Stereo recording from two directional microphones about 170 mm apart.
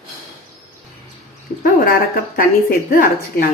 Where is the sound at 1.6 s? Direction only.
60° left (ahead or behind).